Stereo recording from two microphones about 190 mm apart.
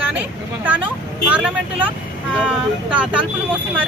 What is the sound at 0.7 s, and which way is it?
Speech, 10° right (ahead or behind).